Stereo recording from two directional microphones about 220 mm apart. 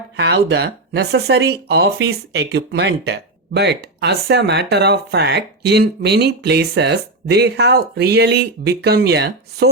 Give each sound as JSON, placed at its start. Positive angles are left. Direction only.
{"t": 0.2, "sound": "speech", "side_deg": -50}